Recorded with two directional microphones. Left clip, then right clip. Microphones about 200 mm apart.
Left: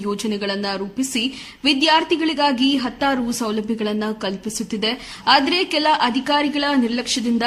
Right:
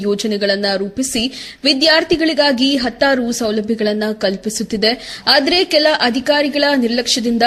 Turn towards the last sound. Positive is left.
turn(degrees=-15)  # may be behind; listen again after turning